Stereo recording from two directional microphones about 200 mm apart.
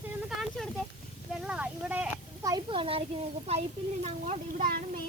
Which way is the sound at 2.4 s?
20° right (ahead or behind).